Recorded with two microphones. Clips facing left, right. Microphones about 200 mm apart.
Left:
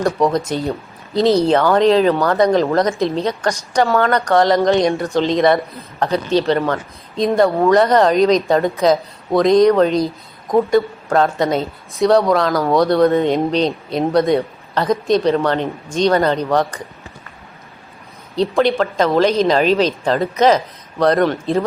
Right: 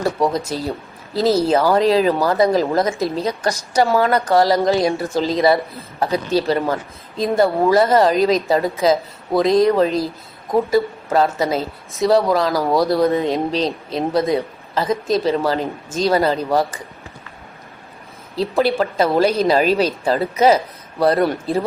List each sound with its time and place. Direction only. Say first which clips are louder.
0.0 s speech: left 3 dB; centre (ahead or behind)
18.3 s speech: left 2 dB; 5° right (ahead or behind)